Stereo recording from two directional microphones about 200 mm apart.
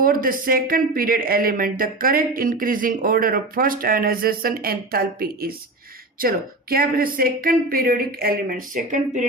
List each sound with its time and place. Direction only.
0.0 s speech: 45° right (ahead or behind)